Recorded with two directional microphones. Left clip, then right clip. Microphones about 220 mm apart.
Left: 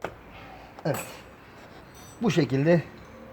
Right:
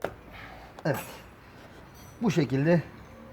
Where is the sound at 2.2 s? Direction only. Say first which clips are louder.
Left 2 dB; 15° left (ahead or behind).